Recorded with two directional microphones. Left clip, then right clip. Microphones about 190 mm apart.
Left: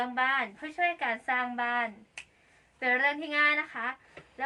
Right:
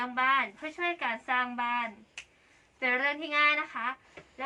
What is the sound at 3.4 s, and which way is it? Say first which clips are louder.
Speech: right 1 dB; 20° left (ahead or behind).